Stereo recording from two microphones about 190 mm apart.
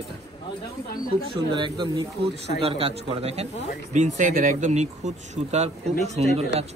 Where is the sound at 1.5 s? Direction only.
25° right (ahead or behind).